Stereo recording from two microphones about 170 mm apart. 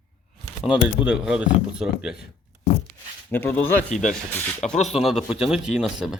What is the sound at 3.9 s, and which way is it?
Speech, 45° left (ahead or behind).